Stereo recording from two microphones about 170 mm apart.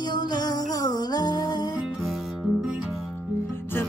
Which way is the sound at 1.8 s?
Centre (ahead or behind).